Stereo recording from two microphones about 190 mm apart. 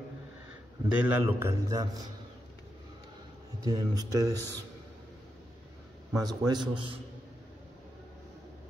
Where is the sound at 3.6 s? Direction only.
20° right (ahead or behind).